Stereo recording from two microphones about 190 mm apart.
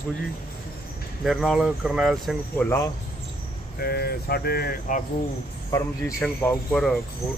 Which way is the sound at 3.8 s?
55° left (ahead or behind).